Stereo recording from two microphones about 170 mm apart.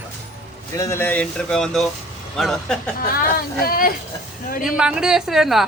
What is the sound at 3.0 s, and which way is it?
Speech, 60° left (ahead or behind).